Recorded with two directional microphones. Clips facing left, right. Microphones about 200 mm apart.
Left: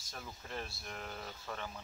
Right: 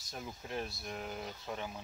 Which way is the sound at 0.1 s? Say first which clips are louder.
Right 4 dB; 15° right (ahead or behind).